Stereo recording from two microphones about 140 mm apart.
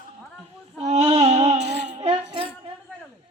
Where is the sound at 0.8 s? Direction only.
50° right (ahead or behind).